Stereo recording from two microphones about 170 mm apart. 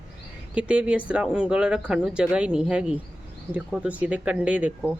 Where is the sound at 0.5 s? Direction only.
5° right (ahead or behind).